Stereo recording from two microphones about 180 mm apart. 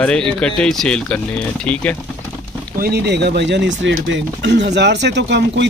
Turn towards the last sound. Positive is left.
turn(degrees=-75)  # may be behind; listen again after turning